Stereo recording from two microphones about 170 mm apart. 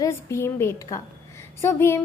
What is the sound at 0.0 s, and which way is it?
A woman's voice, 15° left (ahead or behind).